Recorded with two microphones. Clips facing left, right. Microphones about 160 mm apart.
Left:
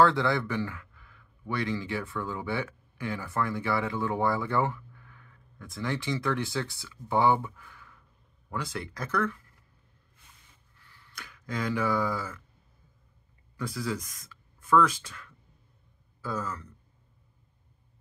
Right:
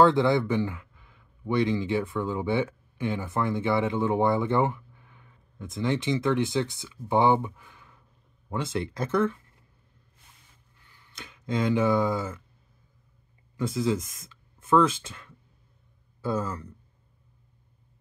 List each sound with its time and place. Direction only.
0.0 s speech: 20° right (ahead or behind)
10.8 s speech: 20° right (ahead or behind)
13.6 s speech: 25° right (ahead or behind)